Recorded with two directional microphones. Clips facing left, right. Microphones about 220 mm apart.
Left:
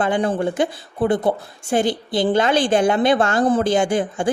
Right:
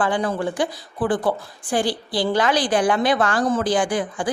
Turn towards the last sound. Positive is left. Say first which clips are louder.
# left 3 dB
turn(degrees=25)  # may be behind; listen again after turning